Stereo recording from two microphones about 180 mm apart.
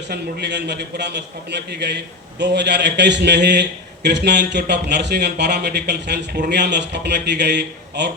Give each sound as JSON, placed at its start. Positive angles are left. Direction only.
{"t": 0.1, "sound": "a man's voice", "side_deg": -70}